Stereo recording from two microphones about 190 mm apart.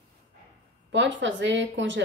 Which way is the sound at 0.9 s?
75° right (ahead or behind).